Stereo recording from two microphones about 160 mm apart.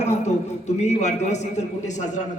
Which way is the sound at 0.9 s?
45° left (ahead or behind).